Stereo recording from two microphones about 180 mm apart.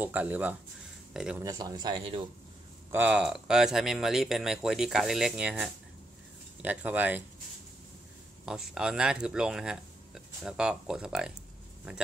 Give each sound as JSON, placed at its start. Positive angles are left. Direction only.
{"t": 0.0, "sound": "speech", "side_deg": -10}
{"t": 1.4, "sound": "speech", "side_deg": -20}
{"t": 2.9, "sound": "speech", "side_deg": -10}
{"t": 8.5, "sound": "speech", "side_deg": -5}